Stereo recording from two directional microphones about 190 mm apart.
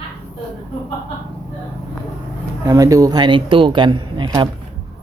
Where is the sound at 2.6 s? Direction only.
15° right (ahead or behind).